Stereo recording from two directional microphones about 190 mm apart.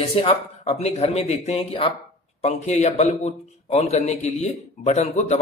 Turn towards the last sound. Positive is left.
turn(degrees=35)  # may be behind; listen again after turning